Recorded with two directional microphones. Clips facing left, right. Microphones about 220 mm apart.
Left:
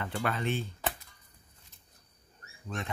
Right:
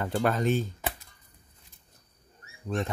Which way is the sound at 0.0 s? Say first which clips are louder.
Right 6 dB; 40° right (ahead or behind).